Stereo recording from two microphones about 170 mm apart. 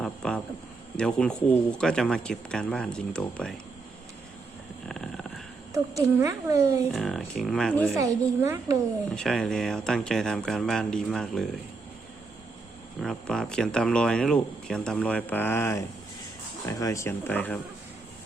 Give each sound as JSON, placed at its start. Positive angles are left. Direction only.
{"t": 0.0, "sound": "a sound", "side_deg": 5}
{"t": 0.9, "sound": "speech", "side_deg": 5}
{"t": 4.9, "sound": "a sound", "side_deg": 0}
{"t": 5.7, "sound": "speech", "side_deg": -20}
{"t": 6.9, "sound": "speech", "side_deg": 5}
{"t": 7.9, "sound": "speech", "side_deg": -15}
{"t": 9.1, "sound": "speech", "side_deg": 5}
{"t": 13.0, "sound": "speech", "side_deg": 5}